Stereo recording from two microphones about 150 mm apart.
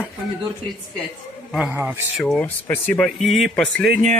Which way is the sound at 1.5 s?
5° right (ahead or behind).